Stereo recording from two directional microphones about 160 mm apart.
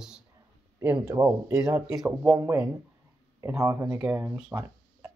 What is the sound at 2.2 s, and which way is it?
Speech, 20° right (ahead or behind).